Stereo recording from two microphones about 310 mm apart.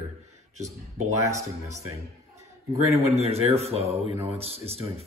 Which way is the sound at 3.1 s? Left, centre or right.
Centre.